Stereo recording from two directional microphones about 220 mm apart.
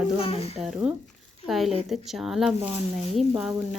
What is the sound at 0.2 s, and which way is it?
Speech, 25° left (ahead or behind).